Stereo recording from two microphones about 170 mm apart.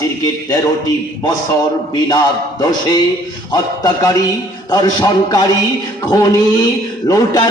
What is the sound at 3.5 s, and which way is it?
Speech, 20° left (ahead or behind).